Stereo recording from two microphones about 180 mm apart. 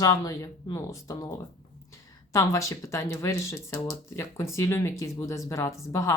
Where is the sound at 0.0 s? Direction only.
20° left (ahead or behind).